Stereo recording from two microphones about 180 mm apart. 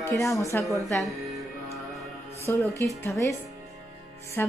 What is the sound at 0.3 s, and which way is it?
Speech, 15° left (ahead or behind).